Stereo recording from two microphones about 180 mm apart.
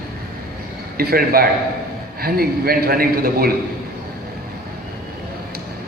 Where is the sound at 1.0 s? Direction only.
55° right (ahead or behind).